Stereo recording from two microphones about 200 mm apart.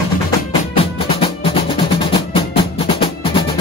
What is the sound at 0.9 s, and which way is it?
Music, 25° left (ahead or behind).